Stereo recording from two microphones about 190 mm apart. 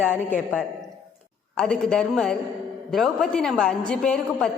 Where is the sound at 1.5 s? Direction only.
5° left (ahead or behind).